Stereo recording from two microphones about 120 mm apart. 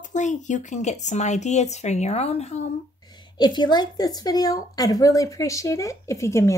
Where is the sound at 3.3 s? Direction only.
40° left (ahead or behind).